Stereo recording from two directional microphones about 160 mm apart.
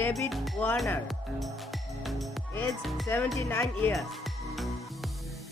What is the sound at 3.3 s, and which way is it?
Speech, 20° left (ahead or behind).